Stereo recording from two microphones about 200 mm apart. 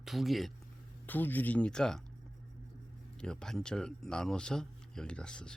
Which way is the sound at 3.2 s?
5° left (ahead or behind).